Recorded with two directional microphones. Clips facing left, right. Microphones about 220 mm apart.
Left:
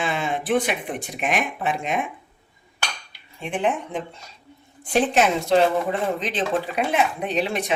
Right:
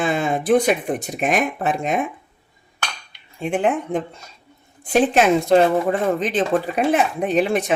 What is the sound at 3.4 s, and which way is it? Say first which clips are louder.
Speech: right 4 dB; 45° right (ahead or behind).